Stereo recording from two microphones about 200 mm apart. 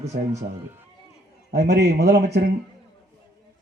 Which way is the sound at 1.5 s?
55° right (ahead or behind).